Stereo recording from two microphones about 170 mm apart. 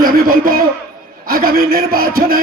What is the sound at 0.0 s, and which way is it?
A man's voice, 55° right (ahead or behind).